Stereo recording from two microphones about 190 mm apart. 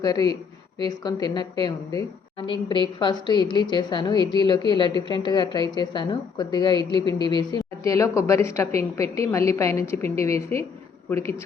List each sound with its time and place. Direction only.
0.0 s a woman's voice: 20° left (ahead or behind)